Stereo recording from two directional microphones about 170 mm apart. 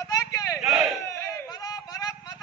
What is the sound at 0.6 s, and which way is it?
Crowd, centre (ahead or behind).